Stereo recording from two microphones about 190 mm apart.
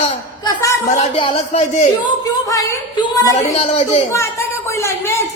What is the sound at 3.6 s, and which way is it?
Speech, 30° left (ahead or behind).